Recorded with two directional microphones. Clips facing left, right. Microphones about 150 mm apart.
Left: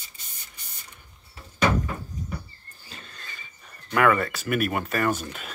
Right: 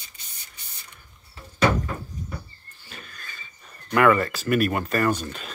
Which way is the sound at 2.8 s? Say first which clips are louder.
Right 1 dB; 25° left (ahead or behind).